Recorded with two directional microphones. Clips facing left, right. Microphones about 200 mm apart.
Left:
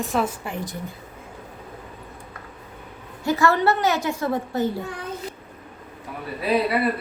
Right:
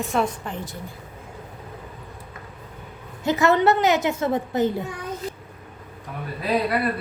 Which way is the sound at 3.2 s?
20° right (ahead or behind).